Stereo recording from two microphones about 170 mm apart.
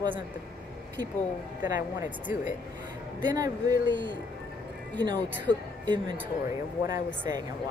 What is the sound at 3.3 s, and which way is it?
Speech, 25° right (ahead or behind).